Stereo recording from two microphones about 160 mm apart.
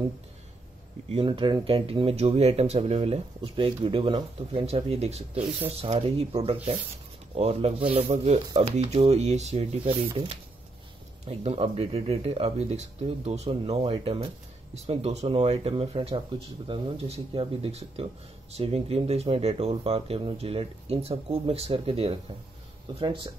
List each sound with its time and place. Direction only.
1.0 s speech: 35° right (ahead or behind)